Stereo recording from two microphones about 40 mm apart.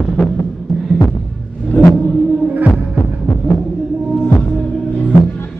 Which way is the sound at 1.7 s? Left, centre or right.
Left.